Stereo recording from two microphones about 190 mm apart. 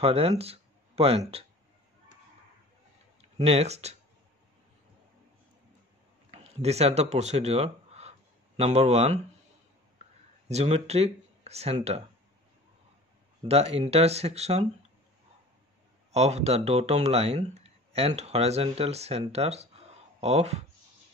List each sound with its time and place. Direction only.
0.0 s speech: 30° right (ahead or behind)
3.2 s speech: 30° right (ahead or behind)
6.4 s speech: 35° right (ahead or behind)
10.5 s speech: 35° right (ahead or behind)
13.4 s speech: 30° right (ahead or behind)
16.1 s speech: 35° right (ahead or behind)